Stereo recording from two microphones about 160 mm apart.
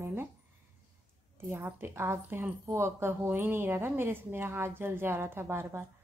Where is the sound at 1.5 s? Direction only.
15° right (ahead or behind).